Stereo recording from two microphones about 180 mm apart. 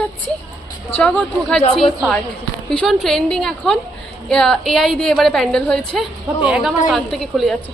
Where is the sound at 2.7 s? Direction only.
Centre (ahead or behind).